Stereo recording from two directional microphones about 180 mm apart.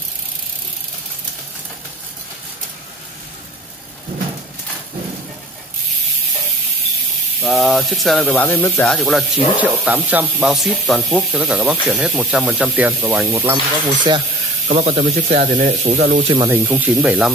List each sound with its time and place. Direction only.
7.4 s speech: centre (ahead or behind); by 14.2 s 25° right (ahead or behind)
14.7 s speech: 40° right (ahead or behind)
16.4 s speech: 10° right (ahead or behind)